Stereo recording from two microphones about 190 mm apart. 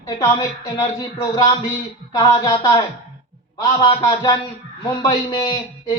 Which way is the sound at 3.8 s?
25° left (ahead or behind).